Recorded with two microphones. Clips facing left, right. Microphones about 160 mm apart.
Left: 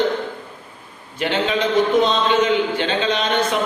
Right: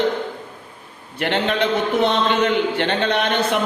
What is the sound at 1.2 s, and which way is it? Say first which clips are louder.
Speech: even; 65° right (ahead or behind).